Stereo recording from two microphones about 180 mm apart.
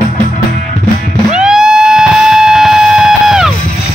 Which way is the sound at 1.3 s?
5° right (ahead or behind).